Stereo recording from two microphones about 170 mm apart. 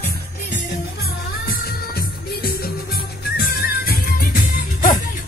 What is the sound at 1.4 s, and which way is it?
Music, 65° left (ahead or behind).